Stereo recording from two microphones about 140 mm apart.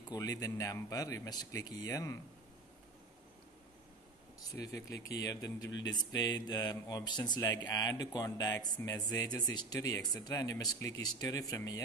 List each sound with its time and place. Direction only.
0.1 s speech: 25° left (ahead or behind)
4.4 s speech: 25° left (ahead or behind)